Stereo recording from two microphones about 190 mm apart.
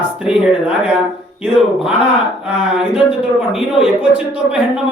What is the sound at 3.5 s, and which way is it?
Speech, 5° right (ahead or behind).